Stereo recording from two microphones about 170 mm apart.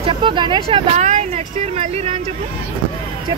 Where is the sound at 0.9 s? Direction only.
45° right (ahead or behind).